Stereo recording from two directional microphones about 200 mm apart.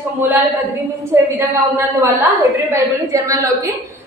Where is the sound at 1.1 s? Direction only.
10° right (ahead or behind).